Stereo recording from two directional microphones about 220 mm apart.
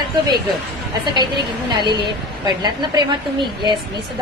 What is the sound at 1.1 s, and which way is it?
A woman's voice, 20° right (ahead or behind).